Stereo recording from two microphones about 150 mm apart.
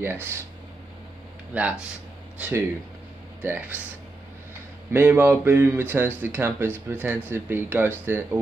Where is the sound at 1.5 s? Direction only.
10° right (ahead or behind).